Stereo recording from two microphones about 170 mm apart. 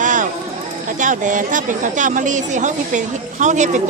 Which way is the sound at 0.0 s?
50° right (ahead or behind).